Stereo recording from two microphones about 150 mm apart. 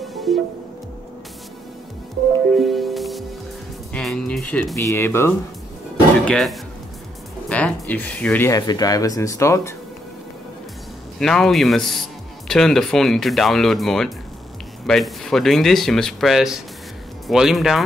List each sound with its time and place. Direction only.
0.0 s music: centre (ahead or behind)
2.5 s music: centre (ahead or behind)
4.7 s speech: 20° left (ahead or behind)
6.2 s speech: centre (ahead or behind)
7.4 s a sound: 10° left (ahead or behind)
8.5 s speech: 25° left (ahead or behind)
11.1 s speech: 5° left (ahead or behind)